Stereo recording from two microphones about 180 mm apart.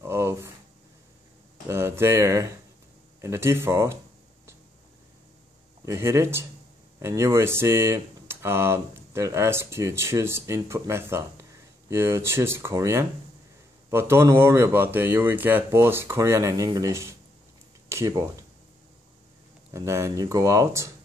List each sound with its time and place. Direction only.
0.0 s a sound: 15° right (ahead or behind)
1.7 s speech: 15° right (ahead or behind)
5.9 s speech: 15° right (ahead or behind)
19.7 s speech: 15° right (ahead or behind)